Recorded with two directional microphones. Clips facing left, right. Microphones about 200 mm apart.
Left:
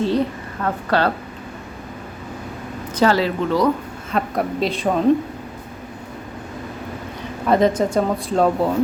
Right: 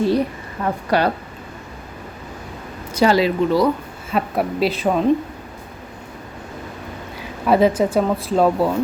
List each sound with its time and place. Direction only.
0.0 s a woman's voice: 10° right (ahead or behind)
2.9 s a woman's voice: 15° right (ahead or behind)
7.2 s speech: 5° right (ahead or behind)